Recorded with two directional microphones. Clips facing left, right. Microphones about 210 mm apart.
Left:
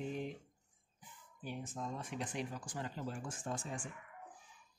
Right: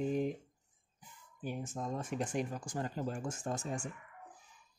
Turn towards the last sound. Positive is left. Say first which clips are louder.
# right 4 dB
turn(degrees=-45)  # may be behind; listen again after turning